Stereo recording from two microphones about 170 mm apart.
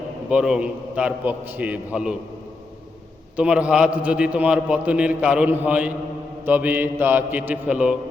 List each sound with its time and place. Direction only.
0.3 s a man's voice: 5° right (ahead or behind)
3.3 s a man's voice: 5° right (ahead or behind)